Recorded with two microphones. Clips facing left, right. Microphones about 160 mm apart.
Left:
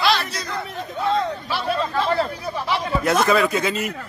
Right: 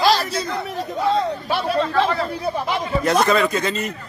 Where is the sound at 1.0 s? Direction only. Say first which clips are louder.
Right 1 dB; 35° right (ahead or behind).